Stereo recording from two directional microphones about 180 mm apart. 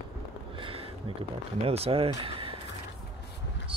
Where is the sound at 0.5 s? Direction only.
30° right (ahead or behind).